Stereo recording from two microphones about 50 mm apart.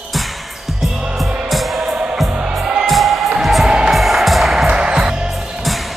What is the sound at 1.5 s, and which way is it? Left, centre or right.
Music, centre.